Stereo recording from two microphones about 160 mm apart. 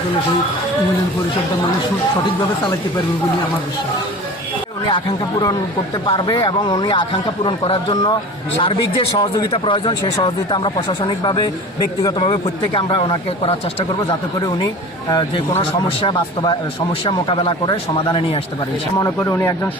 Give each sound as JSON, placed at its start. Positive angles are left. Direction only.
{"t": 4.9, "sound": "speech", "side_deg": 30}
{"t": 15.5, "sound": "speech", "side_deg": 35}
{"t": 18.9, "sound": "speech", "side_deg": 20}